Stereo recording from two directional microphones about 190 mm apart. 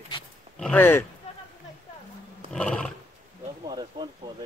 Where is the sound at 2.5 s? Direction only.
5° left (ahead or behind).